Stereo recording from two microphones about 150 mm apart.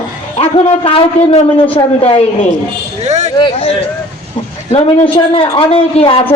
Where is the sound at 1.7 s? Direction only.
40° left (ahead or behind).